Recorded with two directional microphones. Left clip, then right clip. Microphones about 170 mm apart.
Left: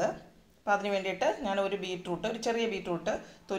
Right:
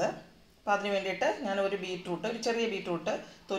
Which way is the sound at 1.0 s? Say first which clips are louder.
Even; 5° left (ahead or behind).